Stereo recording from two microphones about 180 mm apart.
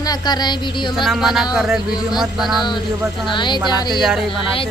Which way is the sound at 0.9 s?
Centre (ahead or behind).